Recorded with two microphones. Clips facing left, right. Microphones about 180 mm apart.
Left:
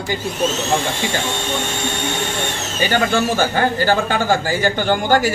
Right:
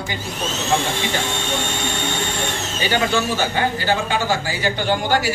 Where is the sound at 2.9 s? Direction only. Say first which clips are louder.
Left 2 dB; 50° left (ahead or behind).